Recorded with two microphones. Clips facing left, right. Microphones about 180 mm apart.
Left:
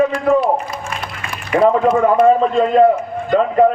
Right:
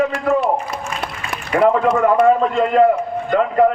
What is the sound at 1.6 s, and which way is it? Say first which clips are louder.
A man's voice: left 2 dB; 20° left (ahead or behind).